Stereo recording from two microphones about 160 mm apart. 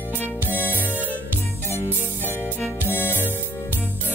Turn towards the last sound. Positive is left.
turn(degrees=10)  # may be behind; listen again after turning